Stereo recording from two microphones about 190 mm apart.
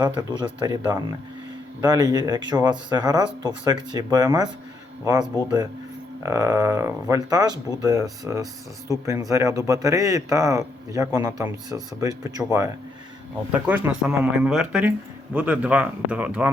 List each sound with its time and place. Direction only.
0.0 s speech: 20° right (ahead or behind)
1.8 s speech: 20° right (ahead or behind)